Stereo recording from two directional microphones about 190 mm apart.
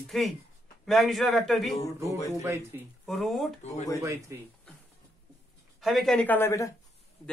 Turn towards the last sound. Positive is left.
turn(degrees=15)  # may be behind; listen again after turning